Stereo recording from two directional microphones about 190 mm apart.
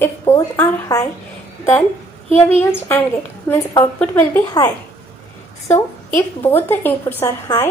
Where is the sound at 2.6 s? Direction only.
15° left (ahead or behind).